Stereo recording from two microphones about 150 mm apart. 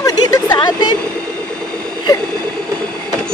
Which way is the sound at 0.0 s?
25° left (ahead or behind).